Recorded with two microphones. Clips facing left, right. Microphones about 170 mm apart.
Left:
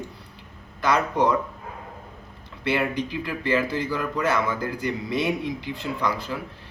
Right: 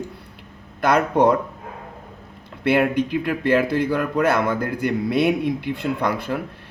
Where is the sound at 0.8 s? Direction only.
55° right (ahead or behind).